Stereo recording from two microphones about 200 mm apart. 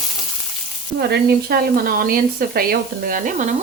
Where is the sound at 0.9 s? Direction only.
50° right (ahead or behind).